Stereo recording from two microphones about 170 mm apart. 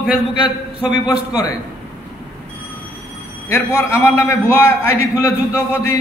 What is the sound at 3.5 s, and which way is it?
A man's voice, 15° left (ahead or behind).